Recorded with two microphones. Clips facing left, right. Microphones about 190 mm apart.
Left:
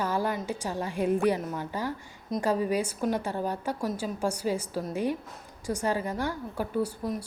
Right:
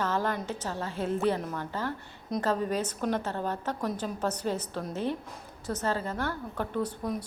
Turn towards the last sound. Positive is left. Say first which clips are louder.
# left 2 dB
turn(degrees=10)  # may be behind; listen again after turning